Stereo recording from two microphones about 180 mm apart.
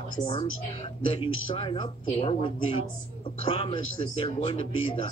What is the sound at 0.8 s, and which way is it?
Speech, 30° left (ahead or behind).